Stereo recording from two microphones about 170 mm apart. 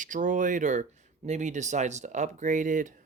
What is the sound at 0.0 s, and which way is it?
Speech, 50° right (ahead or behind).